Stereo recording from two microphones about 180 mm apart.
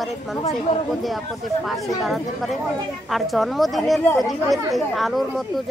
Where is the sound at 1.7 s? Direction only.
Centre (ahead or behind).